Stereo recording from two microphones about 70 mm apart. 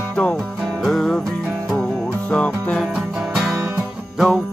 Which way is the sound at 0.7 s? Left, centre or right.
Centre.